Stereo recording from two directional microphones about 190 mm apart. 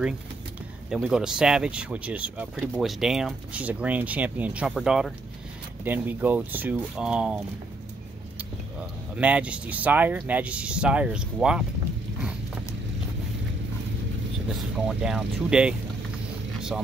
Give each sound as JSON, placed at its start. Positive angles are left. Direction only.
{"t": 0.8, "sound": "speech", "side_deg": -5}
{"t": 8.7, "sound": "speech", "side_deg": -5}
{"t": 14.5, "sound": "speech", "side_deg": -5}